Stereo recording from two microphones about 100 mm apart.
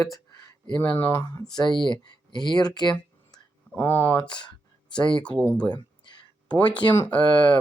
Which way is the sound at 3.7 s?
20° left (ahead or behind).